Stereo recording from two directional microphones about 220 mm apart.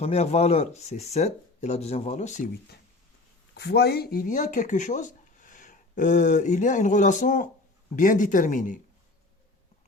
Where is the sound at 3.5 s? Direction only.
50° left (ahead or behind).